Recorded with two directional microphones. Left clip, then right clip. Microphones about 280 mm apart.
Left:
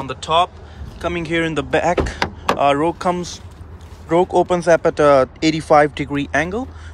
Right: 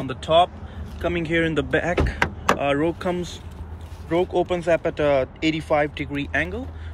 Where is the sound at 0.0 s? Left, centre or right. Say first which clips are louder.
Left 1 dB; centre.